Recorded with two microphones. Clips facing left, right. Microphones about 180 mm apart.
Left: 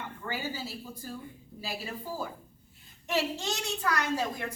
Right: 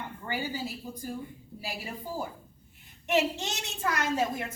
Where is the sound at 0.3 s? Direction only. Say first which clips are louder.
Right 2 dB; 15° right (ahead or behind).